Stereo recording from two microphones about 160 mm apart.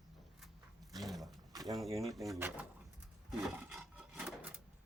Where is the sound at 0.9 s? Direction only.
Centre (ahead or behind).